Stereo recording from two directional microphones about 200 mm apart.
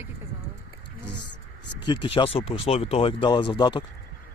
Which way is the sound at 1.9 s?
25° left (ahead or behind).